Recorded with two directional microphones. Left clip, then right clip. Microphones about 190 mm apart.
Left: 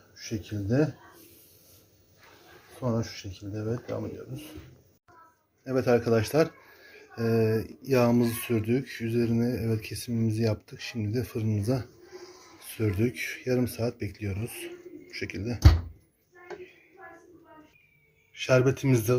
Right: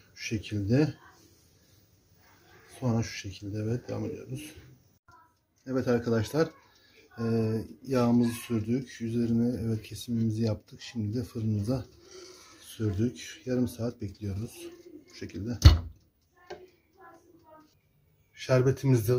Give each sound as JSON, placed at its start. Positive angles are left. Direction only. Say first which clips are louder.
{"t": 0.1, "sound": "speech", "louder": "right 2 dB", "side_deg": -30}
{"t": 2.8, "sound": "speech", "louder": "left 2 dB", "side_deg": -15}
{"t": 5.6, "sound": "speech", "louder": "left 4 dB", "side_deg": 0}
{"t": 15.1, "sound": "speech", "louder": "left 8 dB", "side_deg": -45}
{"t": 18.4, "sound": "speech", "louder": "left 3 dB", "side_deg": 0}